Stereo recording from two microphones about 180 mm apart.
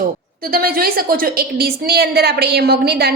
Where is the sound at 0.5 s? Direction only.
55° right (ahead or behind).